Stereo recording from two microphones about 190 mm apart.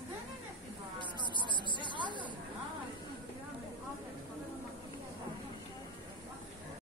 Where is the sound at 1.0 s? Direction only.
25° left (ahead or behind).